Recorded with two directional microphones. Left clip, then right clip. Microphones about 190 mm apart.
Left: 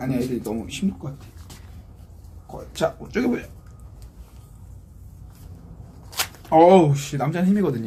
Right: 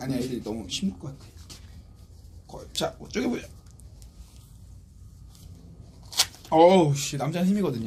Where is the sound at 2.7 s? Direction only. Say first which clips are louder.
Left 6 dB; 15° right (ahead or behind).